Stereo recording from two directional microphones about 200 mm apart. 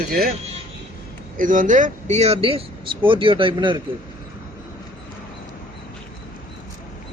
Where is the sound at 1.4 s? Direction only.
40° right (ahead or behind); by 3.8 s 25° right (ahead or behind).